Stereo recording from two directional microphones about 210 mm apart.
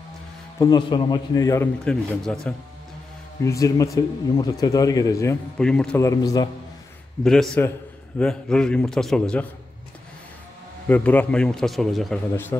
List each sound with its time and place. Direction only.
0.6 s speech: 20° left (ahead or behind); by 2.5 s 5° left (ahead or behind)
3.4 s speech: 15° left (ahead or behind)
7.2 s a man's voice: centre (ahead or behind)
10.9 s a man's voice: 5° left (ahead or behind)